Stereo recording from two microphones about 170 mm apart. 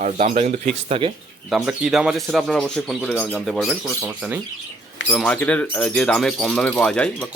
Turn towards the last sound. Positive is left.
turn(degrees=5)  # may be behind; listen again after turning